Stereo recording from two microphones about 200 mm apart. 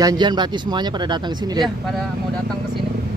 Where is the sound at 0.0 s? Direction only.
20° right (ahead or behind).